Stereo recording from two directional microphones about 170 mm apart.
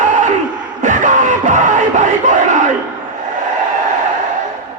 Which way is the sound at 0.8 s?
45° right (ahead or behind).